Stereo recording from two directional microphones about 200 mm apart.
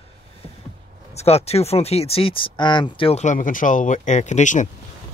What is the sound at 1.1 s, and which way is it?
Speech, 30° left (ahead or behind).